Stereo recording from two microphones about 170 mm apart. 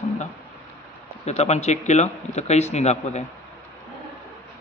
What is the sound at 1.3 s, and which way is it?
Speech, 40° left (ahead or behind).